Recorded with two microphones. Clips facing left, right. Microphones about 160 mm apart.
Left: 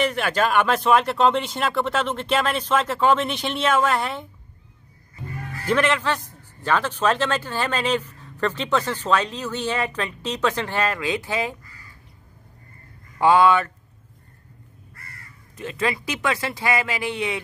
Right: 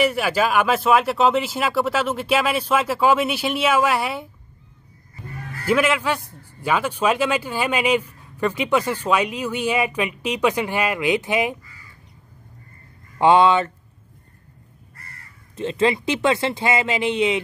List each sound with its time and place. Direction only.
0.0 s a man's voice: 10° right (ahead or behind)
5.7 s a man's voice: 10° right (ahead or behind)
13.2 s speech: 25° right (ahead or behind)
15.5 s speech: 25° right (ahead or behind)